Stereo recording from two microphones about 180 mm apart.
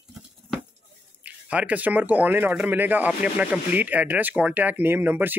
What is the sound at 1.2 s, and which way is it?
Speech, 10° right (ahead or behind).